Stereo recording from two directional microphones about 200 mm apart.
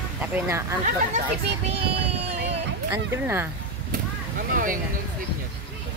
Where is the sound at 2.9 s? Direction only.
10° right (ahead or behind).